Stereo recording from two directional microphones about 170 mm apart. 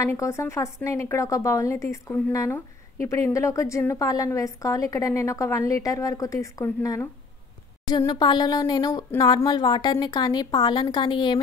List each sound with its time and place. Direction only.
0.0 s speech: 15° left (ahead or behind)